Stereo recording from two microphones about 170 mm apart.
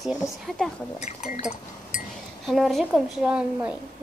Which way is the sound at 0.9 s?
40° left (ahead or behind).